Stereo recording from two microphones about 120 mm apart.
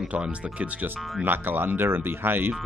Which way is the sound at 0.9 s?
Centre (ahead or behind).